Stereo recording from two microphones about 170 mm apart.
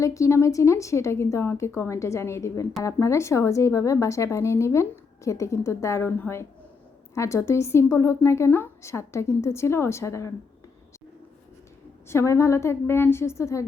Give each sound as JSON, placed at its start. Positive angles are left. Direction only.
{"t": 0.0, "sound": "speech", "side_deg": 20}
{"t": 12.0, "sound": "speech", "side_deg": 15}